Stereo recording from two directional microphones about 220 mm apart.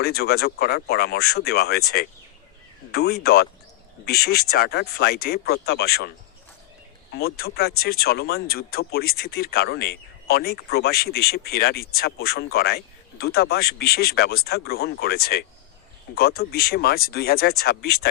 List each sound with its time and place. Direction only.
0.0 s speech: 45° left (ahead or behind)
2.9 s speech: 50° left (ahead or behind)
7.1 s speech: 45° left (ahead or behind)